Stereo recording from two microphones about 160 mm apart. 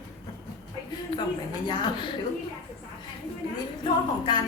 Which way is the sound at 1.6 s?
30° left (ahead or behind).